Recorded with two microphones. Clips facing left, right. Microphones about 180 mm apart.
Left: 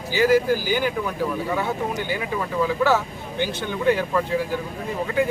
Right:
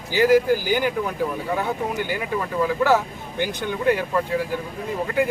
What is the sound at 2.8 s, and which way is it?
Speech, 15° right (ahead or behind).